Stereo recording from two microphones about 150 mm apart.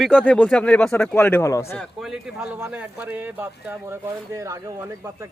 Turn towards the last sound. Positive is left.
turn(degrees=-20)  # may be behind; listen again after turning